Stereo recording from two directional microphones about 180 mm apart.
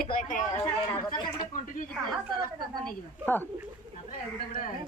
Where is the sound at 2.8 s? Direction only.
10° left (ahead or behind).